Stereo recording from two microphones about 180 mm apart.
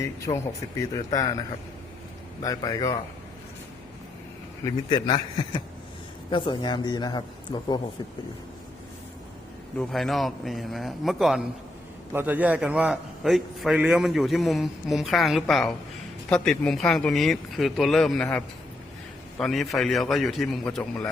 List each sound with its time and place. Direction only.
0.8 s a man's voice: 20° left (ahead or behind)
2.4 s a man's voice: 20° left (ahead or behind)
4.6 s a man's voice: 25° left (ahead or behind)
9.7 s a man's voice: centre (ahead or behind)